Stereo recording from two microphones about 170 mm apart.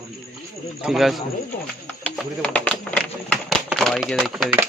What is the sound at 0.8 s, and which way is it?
Speech, centre (ahead or behind).